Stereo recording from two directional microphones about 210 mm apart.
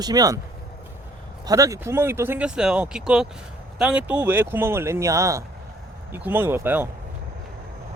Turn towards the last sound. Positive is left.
turn(degrees=-10)  # may be behind; listen again after turning